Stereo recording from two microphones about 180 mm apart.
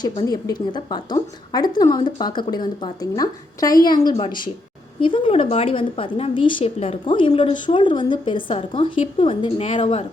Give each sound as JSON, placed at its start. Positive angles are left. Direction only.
{"t": 0.0, "sound": "a woman's voice", "side_deg": 20}